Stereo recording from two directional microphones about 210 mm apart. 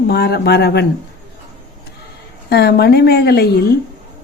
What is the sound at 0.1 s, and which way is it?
Speech, 50° left (ahead or behind).